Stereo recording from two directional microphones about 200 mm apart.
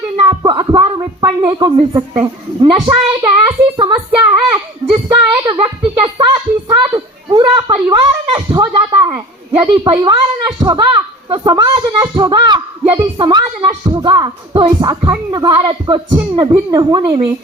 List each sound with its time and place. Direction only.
0.2 s speech: 25° right (ahead or behind)
3.2 s child singing: 20° right (ahead or behind)
9.6 s a sound: 25° right (ahead or behind)
16.1 s a woman's voice: 20° right (ahead or behind)